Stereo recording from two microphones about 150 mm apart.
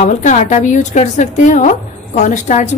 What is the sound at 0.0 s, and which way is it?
A woman's voice, 50° left (ahead or behind).